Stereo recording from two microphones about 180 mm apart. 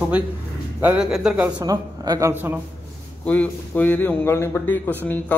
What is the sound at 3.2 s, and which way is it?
A man's voice, 10° left (ahead or behind).